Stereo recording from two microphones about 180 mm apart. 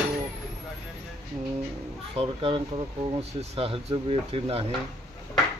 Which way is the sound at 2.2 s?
30° right (ahead or behind).